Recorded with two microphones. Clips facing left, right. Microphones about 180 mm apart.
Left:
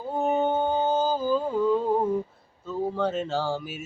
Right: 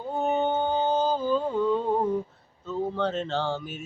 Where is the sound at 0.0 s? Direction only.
5° left (ahead or behind).